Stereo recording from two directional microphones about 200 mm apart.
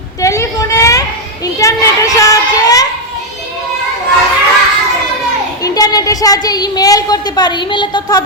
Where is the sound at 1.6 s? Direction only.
15° left (ahead or behind).